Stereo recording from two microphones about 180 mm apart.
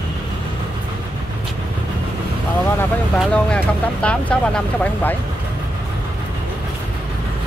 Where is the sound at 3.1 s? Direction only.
5° left (ahead or behind).